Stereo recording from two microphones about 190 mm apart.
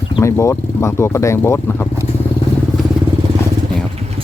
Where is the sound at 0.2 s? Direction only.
15° left (ahead or behind).